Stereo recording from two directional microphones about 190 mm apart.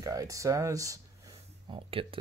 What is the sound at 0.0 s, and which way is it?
Speech, 15° right (ahead or behind).